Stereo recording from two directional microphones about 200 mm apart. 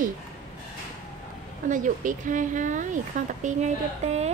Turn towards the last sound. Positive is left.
turn(degrees=-35)  # may be behind; listen again after turning